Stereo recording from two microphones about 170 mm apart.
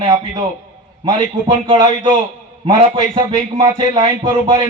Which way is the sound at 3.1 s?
30° right (ahead or behind).